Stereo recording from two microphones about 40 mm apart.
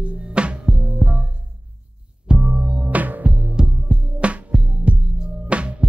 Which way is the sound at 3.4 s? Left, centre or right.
Right.